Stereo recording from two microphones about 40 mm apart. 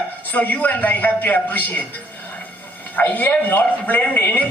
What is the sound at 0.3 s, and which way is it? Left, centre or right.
A man's voice, left.